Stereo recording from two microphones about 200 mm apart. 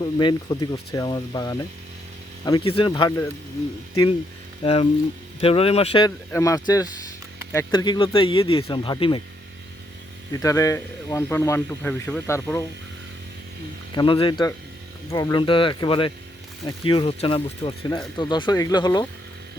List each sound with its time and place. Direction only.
0.2 s speech: 20° left (ahead or behind)
4.6 s speech: 30° left (ahead or behind)
6.3 s speech: 15° left (ahead or behind)
10.3 s speech: 15° left (ahead or behind)
13.9 s speech: 25° left (ahead or behind)
17.8 s speech: 5° left (ahead or behind)
18.2 s speech: 25° left (ahead or behind)